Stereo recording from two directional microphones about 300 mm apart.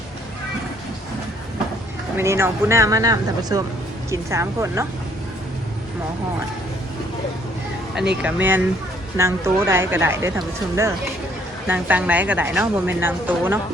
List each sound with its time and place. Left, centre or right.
2.1 s speech: centre
8.2 s a woman's voice: centre